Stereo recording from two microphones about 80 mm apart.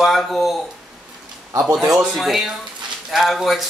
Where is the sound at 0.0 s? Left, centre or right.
Centre.